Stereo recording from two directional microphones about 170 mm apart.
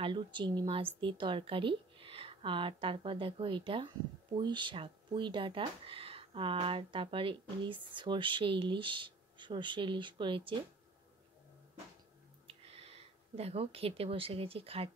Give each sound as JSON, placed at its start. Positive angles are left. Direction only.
{"t": 0.0, "sound": "a woman's voice", "side_deg": -30}
{"t": 12.6, "sound": "speech", "side_deg": -35}